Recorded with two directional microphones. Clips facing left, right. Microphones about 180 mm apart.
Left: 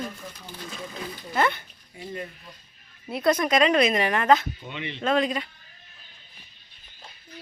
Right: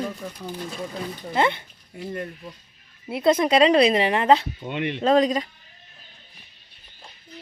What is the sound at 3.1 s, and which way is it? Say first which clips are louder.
Speech: right 3 dB; 25° right (ahead or behind).